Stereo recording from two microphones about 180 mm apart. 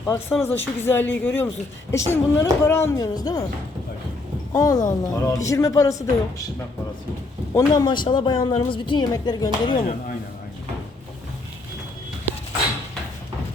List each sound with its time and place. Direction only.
0.0 s a woman's voice: 15° left (ahead or behind)
4.5 s a woman's voice: 20° left (ahead or behind)
7.5 s a woman's voice: 20° left (ahead or behind)
9.7 s speech: 45° left (ahead or behind)